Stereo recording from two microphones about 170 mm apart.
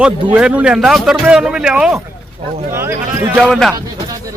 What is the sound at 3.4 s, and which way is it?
Speech, 5° left (ahead or behind).